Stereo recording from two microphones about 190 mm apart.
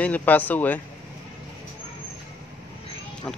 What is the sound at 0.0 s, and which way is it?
Speech, 10° left (ahead or behind).